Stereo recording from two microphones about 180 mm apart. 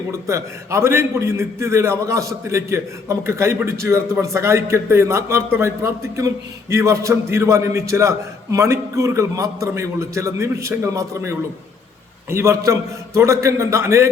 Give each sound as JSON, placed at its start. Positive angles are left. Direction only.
{"t": 0.1, "sound": "a man's voice", "side_deg": -15}